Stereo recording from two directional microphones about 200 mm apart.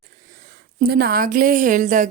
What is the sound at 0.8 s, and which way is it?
A woman's voice, 50° right (ahead or behind).